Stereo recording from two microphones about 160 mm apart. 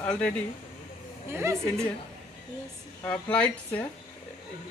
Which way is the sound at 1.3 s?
15° right (ahead or behind).